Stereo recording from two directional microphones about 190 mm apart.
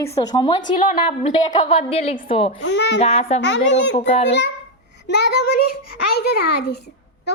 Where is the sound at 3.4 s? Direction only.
65° left (ahead or behind).